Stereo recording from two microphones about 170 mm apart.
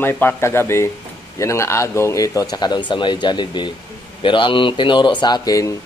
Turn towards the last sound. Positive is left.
turn(degrees=20)  # may be behind; listen again after turning